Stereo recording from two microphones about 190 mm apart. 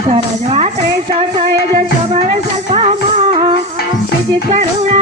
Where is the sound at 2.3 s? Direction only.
30° right (ahead or behind).